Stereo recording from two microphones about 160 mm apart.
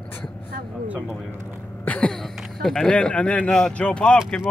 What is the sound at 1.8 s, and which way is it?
Speech, 5° left (ahead or behind).